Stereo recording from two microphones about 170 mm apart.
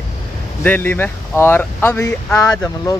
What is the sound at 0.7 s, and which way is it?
A man's voice, 10° left (ahead or behind).